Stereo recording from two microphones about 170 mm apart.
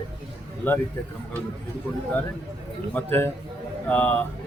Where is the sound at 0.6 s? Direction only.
10° left (ahead or behind).